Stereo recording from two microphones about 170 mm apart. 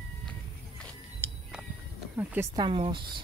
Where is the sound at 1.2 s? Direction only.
15° left (ahead or behind).